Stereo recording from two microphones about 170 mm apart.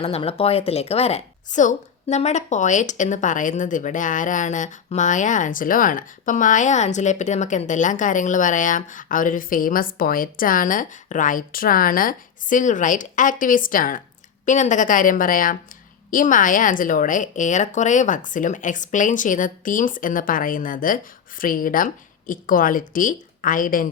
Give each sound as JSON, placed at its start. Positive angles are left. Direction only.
{"t": 0.0, "sound": "a woman's voice", "side_deg": 35}